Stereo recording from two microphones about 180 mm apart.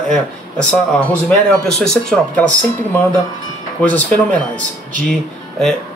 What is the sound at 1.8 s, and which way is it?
Speech, 5° left (ahead or behind).